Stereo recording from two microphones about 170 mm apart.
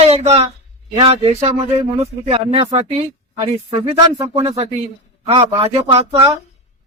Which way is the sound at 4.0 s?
20° right (ahead or behind).